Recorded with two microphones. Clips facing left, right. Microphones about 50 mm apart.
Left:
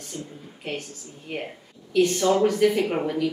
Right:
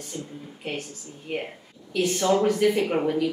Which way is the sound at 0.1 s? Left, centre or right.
Centre.